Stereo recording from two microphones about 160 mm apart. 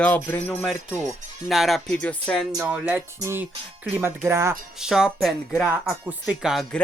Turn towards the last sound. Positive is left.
turn(degrees=0)  # may be behind; listen again after turning